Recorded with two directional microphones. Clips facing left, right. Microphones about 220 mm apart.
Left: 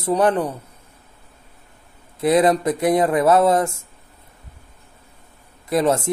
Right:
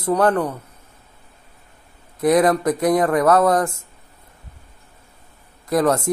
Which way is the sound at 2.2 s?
25° left (ahead or behind).